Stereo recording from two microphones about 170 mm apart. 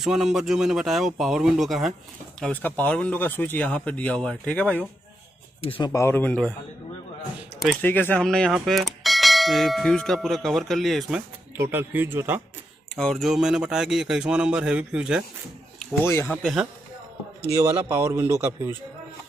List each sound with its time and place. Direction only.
0.0 s speech: centre (ahead or behind)
2.4 s speech: 10° left (ahead or behind)
5.6 s speech: 30° left (ahead or behind)
5.9 s speech: 15° left (ahead or behind)
7.8 s speech: 10° left (ahead or behind)
8.5 s bell: centre (ahead or behind)
11.7 s a man's voice: 10° right (ahead or behind)
12.9 s speech: centre (ahead or behind)
16.0 s speech: 15° left (ahead or behind)
17.4 s a man's voice: 15° right (ahead or behind)